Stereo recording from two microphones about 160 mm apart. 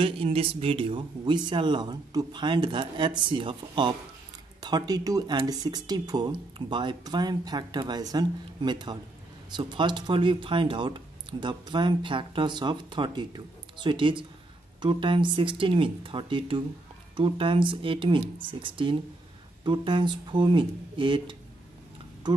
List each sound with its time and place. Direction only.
0.0 s speech: 35° right (ahead or behind)